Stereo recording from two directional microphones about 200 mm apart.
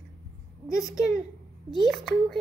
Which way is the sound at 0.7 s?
15° left (ahead or behind).